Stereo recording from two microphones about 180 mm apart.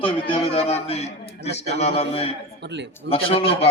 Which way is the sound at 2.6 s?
75° right (ahead or behind).